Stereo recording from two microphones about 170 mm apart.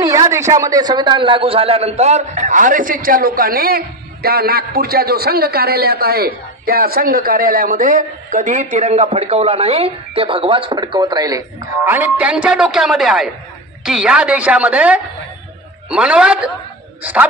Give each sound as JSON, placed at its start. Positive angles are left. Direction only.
{"t": 0.0, "sound": "a man's voice", "side_deg": -20}